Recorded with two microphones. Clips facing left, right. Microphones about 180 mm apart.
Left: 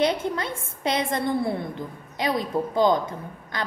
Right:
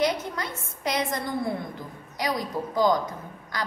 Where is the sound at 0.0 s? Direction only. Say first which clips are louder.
Left 3 dB; 30° left (ahead or behind).